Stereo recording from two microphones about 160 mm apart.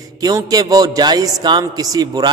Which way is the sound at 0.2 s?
25° right (ahead or behind).